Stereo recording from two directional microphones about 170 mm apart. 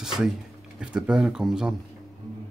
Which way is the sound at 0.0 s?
5° right (ahead or behind).